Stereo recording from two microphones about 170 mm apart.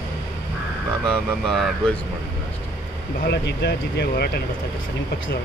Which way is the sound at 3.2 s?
80° left.